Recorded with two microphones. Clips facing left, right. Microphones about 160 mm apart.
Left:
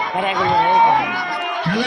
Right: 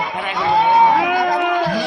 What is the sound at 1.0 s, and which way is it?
Music, 90° right.